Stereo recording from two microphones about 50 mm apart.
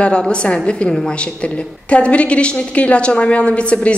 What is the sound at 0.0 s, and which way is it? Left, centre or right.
Speech, left.